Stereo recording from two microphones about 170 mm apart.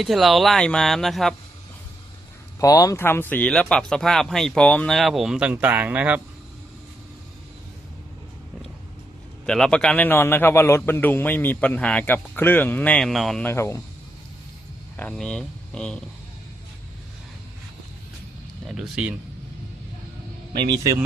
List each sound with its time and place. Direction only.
0.0 s speech: centre (ahead or behind)
2.6 s speech: 20° left (ahead or behind); by 6.2 s 10° right (ahead or behind)
9.5 s a man's voice: 5° left (ahead or behind)
13.5 s a man's voice: 15° left (ahead or behind)
14.9 s speech: 5° left (ahead or behind)
18.7 s speech: 5° right (ahead or behind)